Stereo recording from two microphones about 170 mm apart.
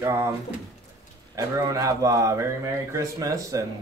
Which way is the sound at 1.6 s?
20° right (ahead or behind).